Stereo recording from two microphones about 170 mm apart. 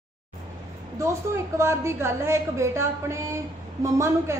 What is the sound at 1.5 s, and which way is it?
A woman's voice, 15° right (ahead or behind).